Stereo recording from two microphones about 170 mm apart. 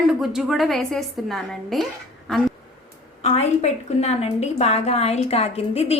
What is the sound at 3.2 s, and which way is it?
A woman's voice, 40° left (ahead or behind).